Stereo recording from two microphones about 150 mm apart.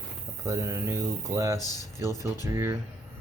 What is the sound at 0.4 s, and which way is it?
Speech, 20° right (ahead or behind).